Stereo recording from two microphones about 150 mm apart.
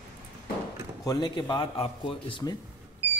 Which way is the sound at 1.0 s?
25° left (ahead or behind).